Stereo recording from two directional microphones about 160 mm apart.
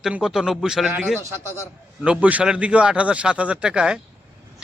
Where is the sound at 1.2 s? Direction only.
15° right (ahead or behind).